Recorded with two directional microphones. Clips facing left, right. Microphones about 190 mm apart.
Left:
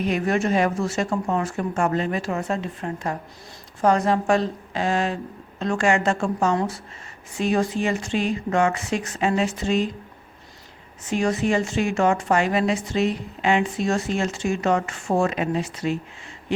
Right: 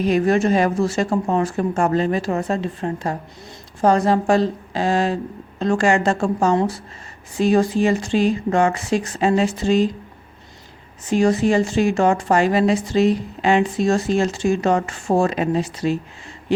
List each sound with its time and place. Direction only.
0.0 s a woman's voice: 35° right (ahead or behind)
11.1 s a woman's voice: 35° right (ahead or behind)
16.5 s a sound: 35° right (ahead or behind)